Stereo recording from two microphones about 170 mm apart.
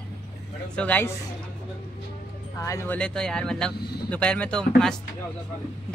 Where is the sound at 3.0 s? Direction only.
5° left (ahead or behind).